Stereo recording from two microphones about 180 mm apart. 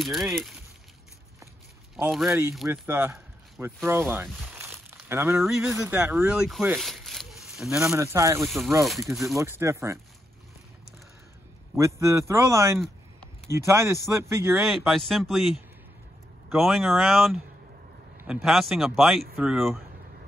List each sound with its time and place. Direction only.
0.0 s speech: centre (ahead or behind)
2.0 s speech: centre (ahead or behind)
2.9 s a sound: 10° right (ahead or behind)
5.4 s speech: 5° right (ahead or behind)
5.8 s speech: 15° right (ahead or behind)
7.9 s speech: 15° right (ahead or behind)
8.5 s speech: centre (ahead or behind)
9.4 s speech: 15° right (ahead or behind)
11.7 s speech: 15° right (ahead or behind)
14.6 s speech: centre (ahead or behind)